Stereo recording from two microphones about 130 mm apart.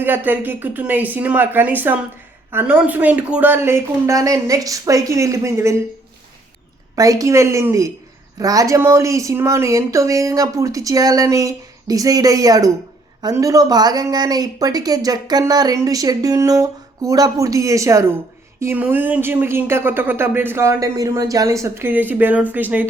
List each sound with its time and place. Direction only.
0.0 s speech: 15° right (ahead or behind)
6.9 s speech: 25° right (ahead or behind)